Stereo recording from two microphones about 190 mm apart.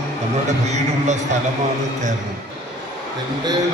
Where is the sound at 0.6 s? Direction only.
35° right (ahead or behind).